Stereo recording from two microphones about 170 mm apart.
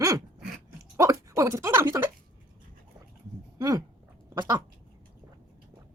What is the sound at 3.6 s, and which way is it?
Speech, 20° right (ahead or behind).